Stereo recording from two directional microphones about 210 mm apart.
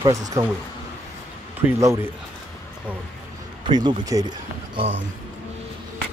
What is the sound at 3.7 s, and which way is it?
Speech, 20° right (ahead or behind).